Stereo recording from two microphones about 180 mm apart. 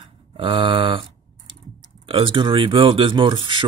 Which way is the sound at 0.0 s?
30° right (ahead or behind).